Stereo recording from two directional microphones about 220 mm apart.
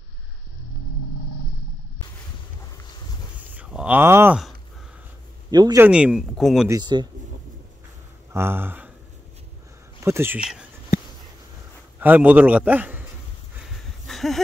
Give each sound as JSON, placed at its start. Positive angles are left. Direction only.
{"t": 3.5, "sound": "speech", "side_deg": -5}
{"t": 5.5, "sound": "a man's voice", "side_deg": -15}
{"t": 5.9, "sound": "speech", "side_deg": -5}
{"t": 6.7, "sound": "speech", "side_deg": -20}
{"t": 8.3, "sound": "speech", "side_deg": -10}
{"t": 9.9, "sound": "speech", "side_deg": -10}
{"t": 12.0, "sound": "a man's voice", "side_deg": -5}
{"t": 14.0, "sound": "a sound", "side_deg": 0}